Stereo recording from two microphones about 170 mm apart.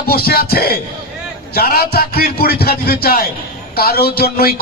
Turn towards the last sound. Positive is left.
turn(degrees=65)  # may be behind; listen again after turning